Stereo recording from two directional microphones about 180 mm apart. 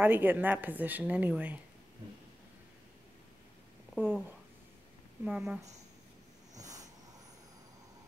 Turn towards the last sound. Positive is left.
turn(degrees=-20)  # may be behind; listen again after turning